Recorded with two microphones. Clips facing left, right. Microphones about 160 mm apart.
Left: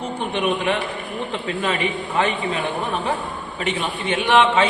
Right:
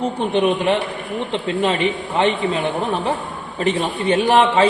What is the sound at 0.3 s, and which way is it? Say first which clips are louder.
A man's voice: right 4 dB; 30° right (ahead or behind).